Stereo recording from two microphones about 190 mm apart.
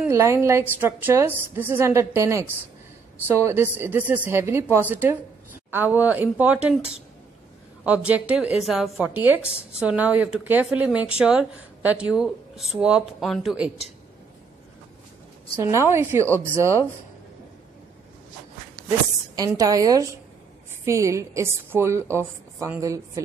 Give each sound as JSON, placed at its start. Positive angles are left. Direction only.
{"t": 0.0, "sound": "a woman's voice", "side_deg": -15}
{"t": 7.8, "sound": "a woman's voice", "side_deg": -5}
{"t": 15.6, "sound": "a woman's voice", "side_deg": -15}
{"t": 19.3, "sound": "a woman's voice", "side_deg": -20}